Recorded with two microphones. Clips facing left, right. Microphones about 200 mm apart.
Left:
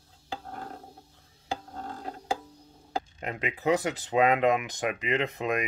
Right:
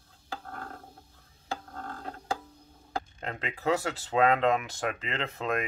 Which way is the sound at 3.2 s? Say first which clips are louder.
Left 4 dB; 15° left (ahead or behind).